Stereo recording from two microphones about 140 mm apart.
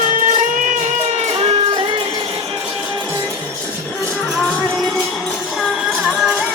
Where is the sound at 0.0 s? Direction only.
70° right (ahead or behind); by 1.8 s 45° right (ahead or behind).